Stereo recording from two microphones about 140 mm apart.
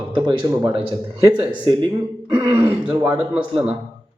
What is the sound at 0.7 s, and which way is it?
Speech, 40° right (ahead or behind).